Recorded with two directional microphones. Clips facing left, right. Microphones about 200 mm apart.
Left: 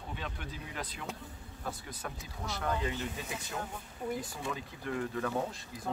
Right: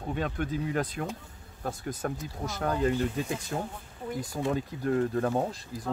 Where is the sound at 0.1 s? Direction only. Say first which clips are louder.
Right 12 dB; 50° right (ahead or behind).